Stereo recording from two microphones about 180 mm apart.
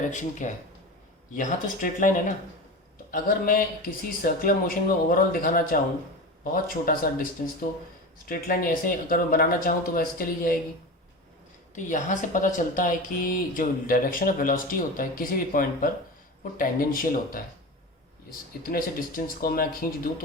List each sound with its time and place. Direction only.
0.1 s a woman's voice: 45° left (ahead or behind)
11.7 s a woman's voice: 45° left (ahead or behind)